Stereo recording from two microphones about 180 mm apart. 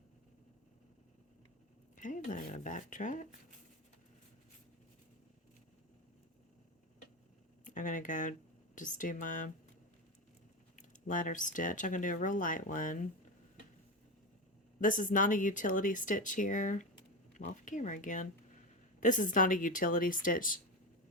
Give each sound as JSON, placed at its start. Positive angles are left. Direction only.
{"t": 2.0, "sound": "speech", "side_deg": 45}
{"t": 7.6, "sound": "speech", "side_deg": 45}
{"t": 10.8, "sound": "speech", "side_deg": 45}
{"t": 14.8, "sound": "speech", "side_deg": 45}